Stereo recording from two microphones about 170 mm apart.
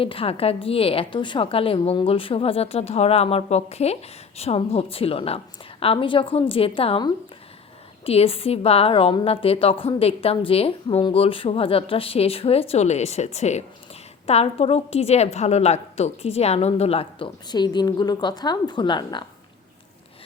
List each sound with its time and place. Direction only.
0.0 s a woman's voice: 35° left (ahead or behind)